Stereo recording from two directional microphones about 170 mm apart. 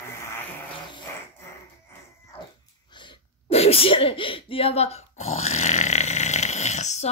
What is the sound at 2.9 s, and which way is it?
Sneeze, 30° left (ahead or behind).